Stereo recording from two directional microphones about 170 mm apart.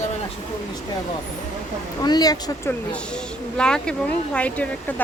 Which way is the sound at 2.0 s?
25° left (ahead or behind).